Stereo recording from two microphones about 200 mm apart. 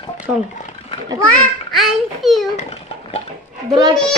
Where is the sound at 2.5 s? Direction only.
30° left (ahead or behind).